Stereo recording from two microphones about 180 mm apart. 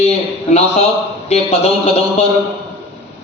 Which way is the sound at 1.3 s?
35° left (ahead or behind).